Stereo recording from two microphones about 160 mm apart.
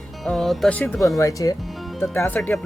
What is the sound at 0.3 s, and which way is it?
Speech, centre (ahead or behind).